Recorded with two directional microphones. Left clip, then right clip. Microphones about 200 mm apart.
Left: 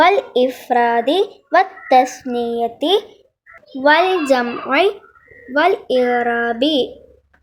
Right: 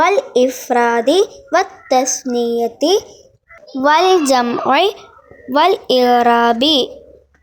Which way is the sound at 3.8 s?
35° right (ahead or behind).